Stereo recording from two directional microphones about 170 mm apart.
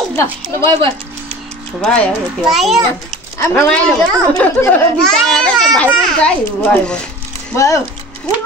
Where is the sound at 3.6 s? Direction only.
5° left (ahead or behind).